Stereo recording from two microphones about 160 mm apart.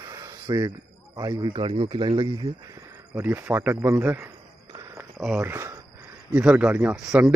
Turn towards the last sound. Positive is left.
turn(degrees=-5)  # may be behind; listen again after turning